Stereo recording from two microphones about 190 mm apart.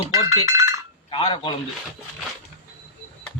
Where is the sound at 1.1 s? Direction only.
25° left (ahead or behind).